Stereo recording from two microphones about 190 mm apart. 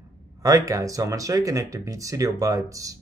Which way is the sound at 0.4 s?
20° right (ahead or behind).